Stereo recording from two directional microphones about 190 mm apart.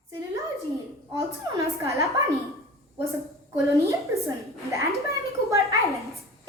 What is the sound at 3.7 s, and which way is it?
A woman's voice, 15° right (ahead or behind).